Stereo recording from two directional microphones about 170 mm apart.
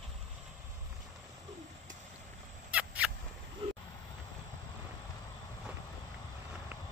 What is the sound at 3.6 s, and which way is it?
Vehicle, 35° right (ahead or behind).